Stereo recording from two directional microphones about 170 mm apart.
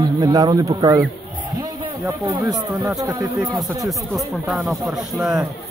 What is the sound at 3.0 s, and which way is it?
Speech, 20° right (ahead or behind).